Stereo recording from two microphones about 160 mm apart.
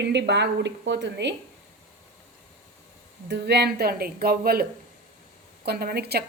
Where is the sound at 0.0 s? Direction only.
90° right.